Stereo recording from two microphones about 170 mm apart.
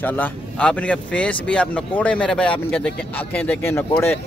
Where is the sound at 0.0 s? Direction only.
10° left (ahead or behind).